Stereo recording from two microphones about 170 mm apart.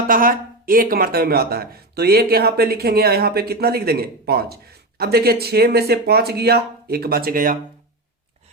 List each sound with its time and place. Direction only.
0.1 s speech: 55° right (ahead or behind)